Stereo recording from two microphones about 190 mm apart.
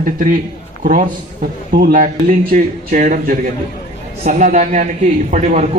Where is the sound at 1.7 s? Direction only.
45° right (ahead or behind).